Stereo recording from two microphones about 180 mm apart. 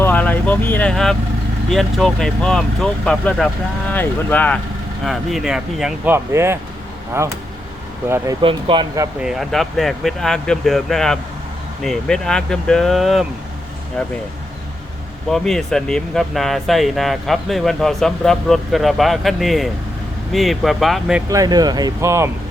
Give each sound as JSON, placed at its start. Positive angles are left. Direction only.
{"t": 0.0, "sound": "speech", "side_deg": 10}
{"t": 8.4, "sound": "speech", "side_deg": -30}
{"t": 9.2, "sound": "speech", "side_deg": 0}
{"t": 15.3, "sound": "speech", "side_deg": 5}
{"t": 21.2, "sound": "speech", "side_deg": -20}